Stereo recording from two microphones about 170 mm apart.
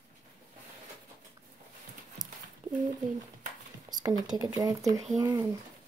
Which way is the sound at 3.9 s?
25° right (ahead or behind).